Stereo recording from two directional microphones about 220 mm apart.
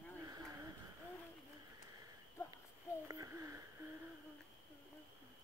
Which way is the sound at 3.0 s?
15° right (ahead or behind).